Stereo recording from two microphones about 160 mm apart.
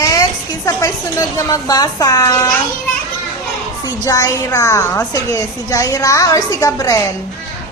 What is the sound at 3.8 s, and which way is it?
A woman's voice, 25° left (ahead or behind).